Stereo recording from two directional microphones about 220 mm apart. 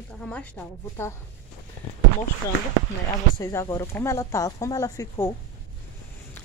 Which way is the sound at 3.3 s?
15° left (ahead or behind).